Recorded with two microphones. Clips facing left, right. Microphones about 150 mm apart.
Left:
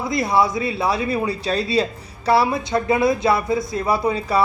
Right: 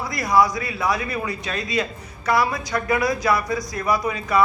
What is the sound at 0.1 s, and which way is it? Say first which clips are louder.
Speech: even; 25° left (ahead or behind).